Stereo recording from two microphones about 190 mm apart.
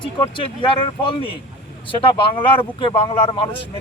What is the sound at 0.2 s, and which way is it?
Speech, 25° left (ahead or behind).